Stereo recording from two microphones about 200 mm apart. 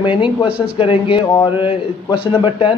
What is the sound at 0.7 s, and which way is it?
A man's voice, 25° left (ahead or behind).